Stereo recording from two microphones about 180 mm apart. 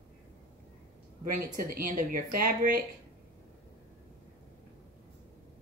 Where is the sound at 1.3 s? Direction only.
50° right (ahead or behind).